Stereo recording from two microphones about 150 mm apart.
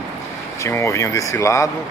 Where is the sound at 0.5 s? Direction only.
20° left (ahead or behind).